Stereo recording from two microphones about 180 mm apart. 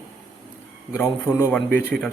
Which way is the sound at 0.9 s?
15° left (ahead or behind).